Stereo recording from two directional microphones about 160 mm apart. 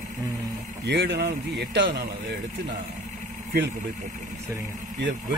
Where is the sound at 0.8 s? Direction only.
85° right.